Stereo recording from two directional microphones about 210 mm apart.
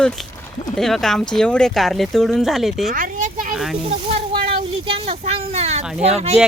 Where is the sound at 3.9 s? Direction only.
25° right (ahead or behind).